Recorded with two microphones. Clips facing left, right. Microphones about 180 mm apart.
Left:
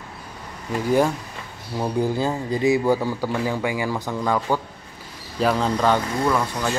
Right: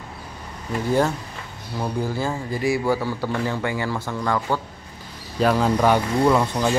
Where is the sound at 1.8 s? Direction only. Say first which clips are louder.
Left 3 dB; 20° left (ahead or behind).